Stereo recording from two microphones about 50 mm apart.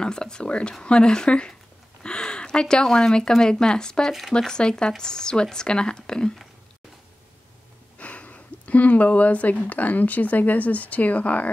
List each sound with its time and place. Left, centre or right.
0.0 s speech: centre
8.0 s speech: left